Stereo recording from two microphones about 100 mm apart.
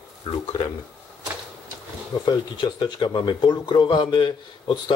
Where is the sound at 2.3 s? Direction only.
45° left (ahead or behind).